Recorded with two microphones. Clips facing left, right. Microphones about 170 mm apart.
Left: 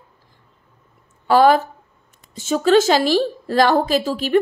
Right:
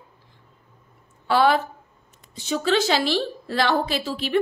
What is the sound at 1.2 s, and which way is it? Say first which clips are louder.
A woman's voice: left 6 dB; 45° left (ahead or behind).